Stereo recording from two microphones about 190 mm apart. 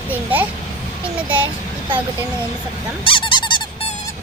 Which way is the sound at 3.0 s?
25° left (ahead or behind).